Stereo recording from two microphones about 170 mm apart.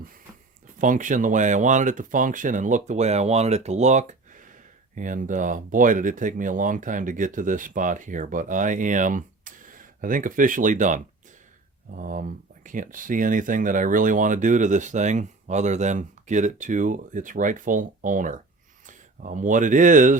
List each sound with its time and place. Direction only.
0.8 s speech: 50° right (ahead or behind)